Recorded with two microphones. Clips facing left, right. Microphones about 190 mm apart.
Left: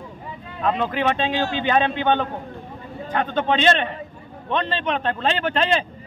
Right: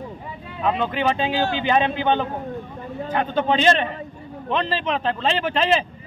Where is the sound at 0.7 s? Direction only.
Centre (ahead or behind).